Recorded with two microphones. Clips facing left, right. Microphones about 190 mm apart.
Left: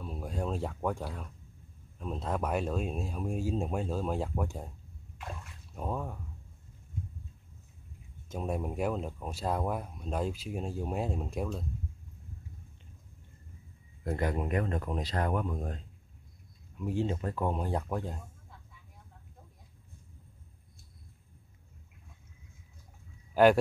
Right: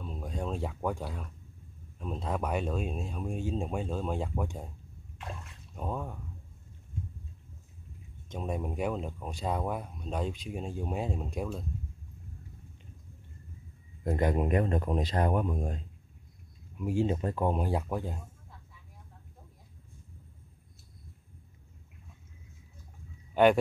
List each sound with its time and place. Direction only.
0.0 s a sound: 5° left (ahead or behind)
2.0 s speech: centre (ahead or behind)
5.2 s bathtub: centre (ahead or behind)
8.3 s speech: 5° left (ahead or behind)
14.0 s speech: 20° right (ahead or behind); by 18.2 s 5° right (ahead or behind)